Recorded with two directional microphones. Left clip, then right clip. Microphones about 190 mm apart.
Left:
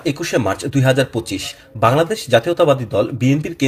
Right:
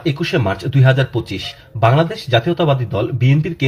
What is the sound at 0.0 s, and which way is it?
Speech, 35° left (ahead or behind).